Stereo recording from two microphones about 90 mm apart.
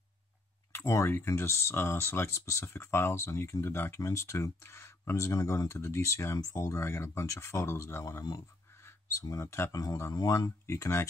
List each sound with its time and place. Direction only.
0.7 s speech: 30° left (ahead or behind)